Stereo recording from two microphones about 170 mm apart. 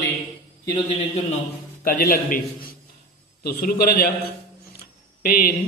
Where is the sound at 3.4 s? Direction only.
65° left (ahead or behind).